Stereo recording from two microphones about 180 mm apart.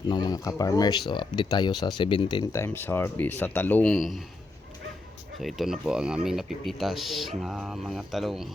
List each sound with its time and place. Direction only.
0.1 s speech: 25° left (ahead or behind); by 4.2 s centre (ahead or behind)
5.4 s speech: centre (ahead or behind)